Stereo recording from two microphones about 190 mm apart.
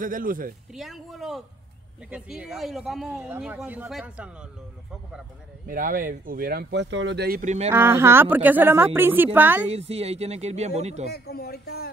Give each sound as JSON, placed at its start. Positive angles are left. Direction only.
{"t": 0.0, "sound": "speech", "side_deg": -45}
{"t": 0.7, "sound": "speech", "side_deg": 0}
{"t": 5.7, "sound": "speech", "side_deg": -45}
{"t": 7.4, "sound": "speech", "side_deg": -35}
{"t": 7.7, "sound": "a woman's voice", "side_deg": -15}
{"t": 9.7, "sound": "speech", "side_deg": -35}
{"t": 11.1, "sound": "speech", "side_deg": 60}